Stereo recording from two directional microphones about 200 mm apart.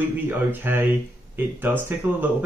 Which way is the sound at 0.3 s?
10° right (ahead or behind).